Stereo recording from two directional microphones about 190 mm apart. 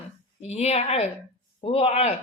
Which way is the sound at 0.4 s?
35° left (ahead or behind).